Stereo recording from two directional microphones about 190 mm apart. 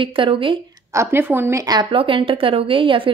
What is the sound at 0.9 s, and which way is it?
A woman's voice, 15° right (ahead or behind).